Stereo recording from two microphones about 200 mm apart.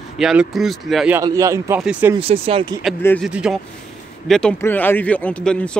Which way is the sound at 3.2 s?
5° right (ahead or behind).